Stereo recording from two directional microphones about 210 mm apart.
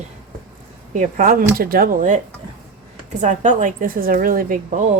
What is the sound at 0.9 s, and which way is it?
A woman's voice, 40° right (ahead or behind).